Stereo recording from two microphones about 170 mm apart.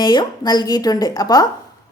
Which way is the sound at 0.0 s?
25° left (ahead or behind).